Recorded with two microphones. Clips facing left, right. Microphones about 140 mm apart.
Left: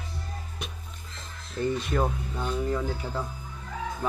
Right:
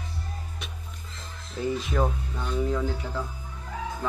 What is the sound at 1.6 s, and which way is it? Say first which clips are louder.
Speech: even; centre (ahead or behind).